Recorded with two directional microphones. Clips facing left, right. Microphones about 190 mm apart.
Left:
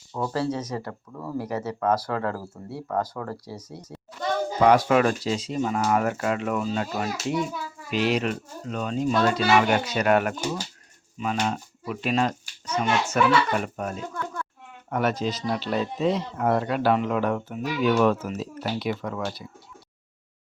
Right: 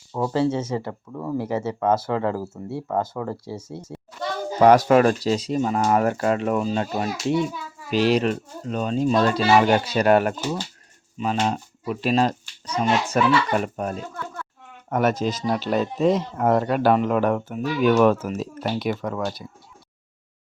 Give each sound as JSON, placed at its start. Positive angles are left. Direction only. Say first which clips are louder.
{"t": 0.1, "sound": "speech", "louder": "right 5 dB", "side_deg": -25}
{"t": 4.6, "sound": "a child's voice", "louder": "right 4 dB", "side_deg": -40}
{"t": 6.6, "sound": "a child's voice", "louder": "right 3 dB", "side_deg": -25}
{"t": 14.8, "sound": "speech", "louder": "right 4 dB", "side_deg": -45}